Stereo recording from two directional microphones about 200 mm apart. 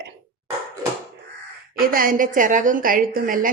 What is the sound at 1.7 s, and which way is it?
A woman's voice, 45° right (ahead or behind).